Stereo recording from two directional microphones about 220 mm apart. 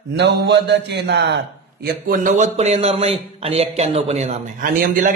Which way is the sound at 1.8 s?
35° right (ahead or behind).